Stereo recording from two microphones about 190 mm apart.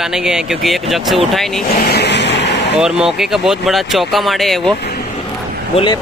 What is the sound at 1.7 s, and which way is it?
Vehicle, 60° left (ahead or behind).